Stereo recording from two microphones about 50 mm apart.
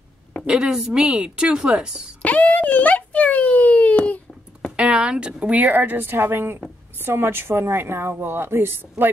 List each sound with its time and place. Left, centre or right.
0.5 s a woman's voice: centre
2.2 s a sound: left
4.7 s speech: right
5.7 s a woman's voice: right